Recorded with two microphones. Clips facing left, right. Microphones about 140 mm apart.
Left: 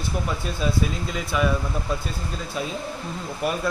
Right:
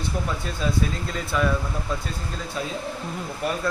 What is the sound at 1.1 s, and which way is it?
Speech, 10° left (ahead or behind).